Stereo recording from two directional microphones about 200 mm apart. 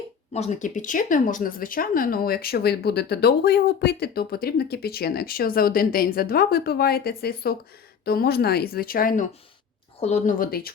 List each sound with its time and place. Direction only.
0.3 s a woman's voice: 35° left (ahead or behind)